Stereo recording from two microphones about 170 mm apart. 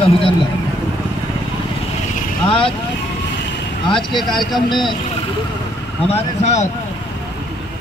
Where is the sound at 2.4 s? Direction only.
30° left (ahead or behind).